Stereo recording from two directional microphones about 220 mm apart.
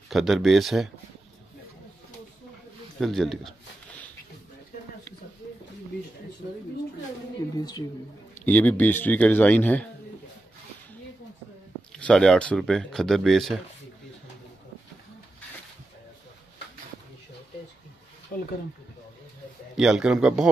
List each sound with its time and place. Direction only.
0.1 s speech: centre (ahead or behind)
3.0 s a sound: centre (ahead or behind)
7.5 s speech: 15° left (ahead or behind)
8.5 s speech: 5° left (ahead or behind)
11.9 s speech: 5° left (ahead or behind)
19.8 s speech: 5° right (ahead or behind)